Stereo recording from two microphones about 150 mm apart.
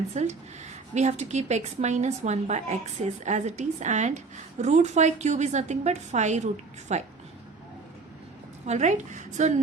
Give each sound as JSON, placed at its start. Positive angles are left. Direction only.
{"t": 0.1, "sound": "a woman's voice", "side_deg": -50}
{"t": 8.6, "sound": "a woman's voice", "side_deg": -50}